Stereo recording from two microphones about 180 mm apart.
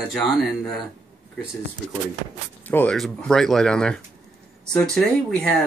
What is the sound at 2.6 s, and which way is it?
Speech, 10° left (ahead or behind).